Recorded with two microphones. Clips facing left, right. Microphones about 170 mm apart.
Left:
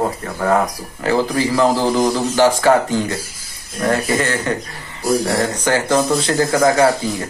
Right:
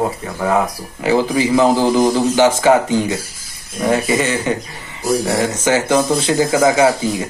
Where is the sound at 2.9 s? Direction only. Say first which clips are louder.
Right 3 dB; 10° right (ahead or behind).